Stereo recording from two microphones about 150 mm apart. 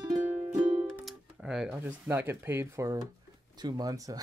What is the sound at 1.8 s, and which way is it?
Speech, 15° right (ahead or behind).